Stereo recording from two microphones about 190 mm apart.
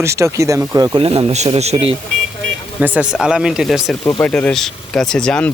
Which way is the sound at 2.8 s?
5° right (ahead or behind).